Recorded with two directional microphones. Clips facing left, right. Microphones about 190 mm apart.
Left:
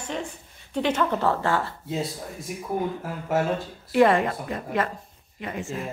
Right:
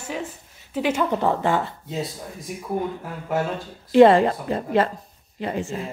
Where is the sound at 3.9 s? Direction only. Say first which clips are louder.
Right 6 dB; 30° right (ahead or behind).